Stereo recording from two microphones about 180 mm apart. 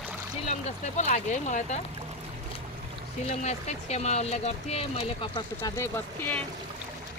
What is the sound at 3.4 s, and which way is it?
Speech, 40° left (ahead or behind).